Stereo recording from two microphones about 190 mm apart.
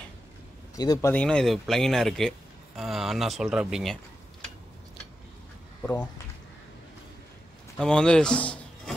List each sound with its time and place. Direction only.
0.7 s speech: 20° left (ahead or behind); by 4.5 s centre (ahead or behind)
7.7 s speech: 5° left (ahead or behind)